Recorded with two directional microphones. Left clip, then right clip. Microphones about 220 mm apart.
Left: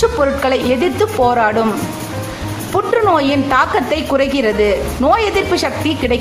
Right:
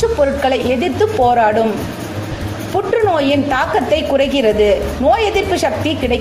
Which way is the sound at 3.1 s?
15° left (ahead or behind).